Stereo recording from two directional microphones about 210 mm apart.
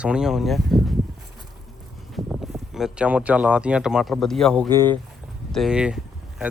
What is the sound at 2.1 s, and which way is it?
Speech, centre (ahead or behind).